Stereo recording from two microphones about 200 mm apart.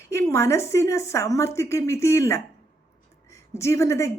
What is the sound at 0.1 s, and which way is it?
A woman's voice, 15° left (ahead or behind).